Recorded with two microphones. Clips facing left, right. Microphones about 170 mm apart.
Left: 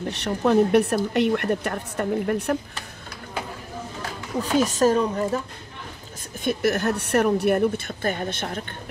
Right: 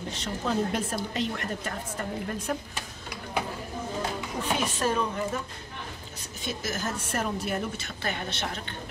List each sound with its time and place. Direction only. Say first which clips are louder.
0.1 s a woman's voice: left 10 dB; 65° left (ahead or behind)
4.4 s speech: left 9 dB; 40° left (ahead or behind)
6.4 s speech: left 10 dB; 65° left (ahead or behind)